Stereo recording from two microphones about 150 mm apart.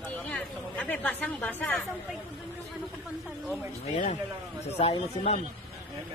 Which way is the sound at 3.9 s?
50° left (ahead or behind).